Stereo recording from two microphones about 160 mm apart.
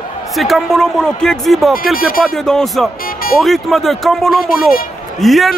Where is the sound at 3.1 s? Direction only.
65° left (ahead or behind).